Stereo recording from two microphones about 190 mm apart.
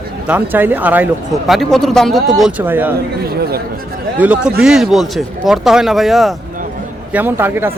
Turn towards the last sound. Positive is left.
turn(degrees=-10)  # may be behind; listen again after turning